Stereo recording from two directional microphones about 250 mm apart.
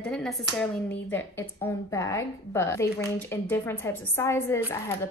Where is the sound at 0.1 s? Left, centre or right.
Centre.